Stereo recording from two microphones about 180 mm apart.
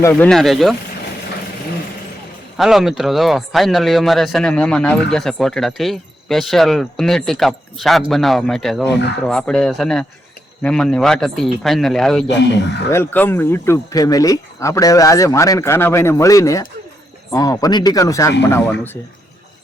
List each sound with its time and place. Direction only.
0.0 s speech: 15° left (ahead or behind)
0.3 s speech: centre (ahead or behind)
2.6 s speech: centre (ahead or behind)